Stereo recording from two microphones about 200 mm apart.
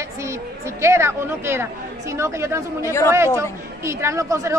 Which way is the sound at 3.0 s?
15° right (ahead or behind).